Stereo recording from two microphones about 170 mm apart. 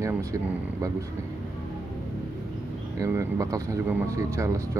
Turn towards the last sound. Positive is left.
turn(degrees=-20)  # may be behind; listen again after turning